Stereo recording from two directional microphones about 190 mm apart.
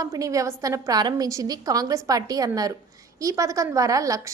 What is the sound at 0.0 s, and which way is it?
A woman's voice, 15° right (ahead or behind).